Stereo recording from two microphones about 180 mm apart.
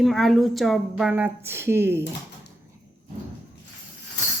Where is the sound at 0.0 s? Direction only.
Centre (ahead or behind).